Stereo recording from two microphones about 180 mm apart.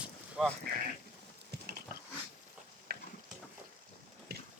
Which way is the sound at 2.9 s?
60° right (ahead or behind).